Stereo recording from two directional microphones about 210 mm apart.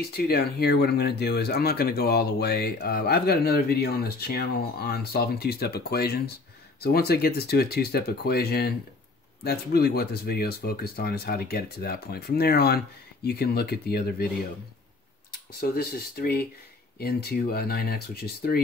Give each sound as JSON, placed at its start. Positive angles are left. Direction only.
{"t": 0.1, "sound": "speech", "side_deg": 50}
{"t": 15.7, "sound": "speech", "side_deg": 45}